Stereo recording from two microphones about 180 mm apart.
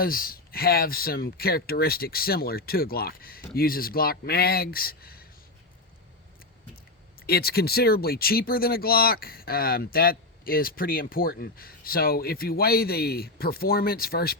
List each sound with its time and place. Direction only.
0.0 s speech: 55° left (ahead or behind)
7.2 s speech: 60° left (ahead or behind)